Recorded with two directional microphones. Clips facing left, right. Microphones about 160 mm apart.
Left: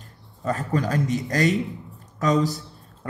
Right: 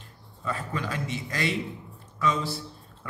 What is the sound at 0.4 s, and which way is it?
A man's voice, 45° left (ahead or behind).